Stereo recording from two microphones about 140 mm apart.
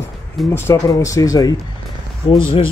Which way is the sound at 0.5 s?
20° left (ahead or behind).